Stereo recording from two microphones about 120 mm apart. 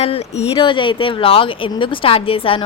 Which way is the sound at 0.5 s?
45° left (ahead or behind).